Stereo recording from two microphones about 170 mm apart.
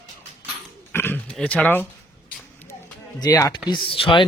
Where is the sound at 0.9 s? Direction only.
10° left (ahead or behind).